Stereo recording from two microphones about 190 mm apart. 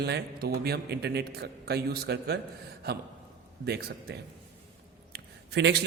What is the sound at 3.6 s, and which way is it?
Speech, 55° right (ahead or behind).